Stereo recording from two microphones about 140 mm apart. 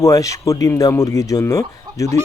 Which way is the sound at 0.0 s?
25° left (ahead or behind).